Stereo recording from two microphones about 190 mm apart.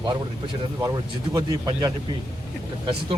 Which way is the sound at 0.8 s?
20° right (ahead or behind).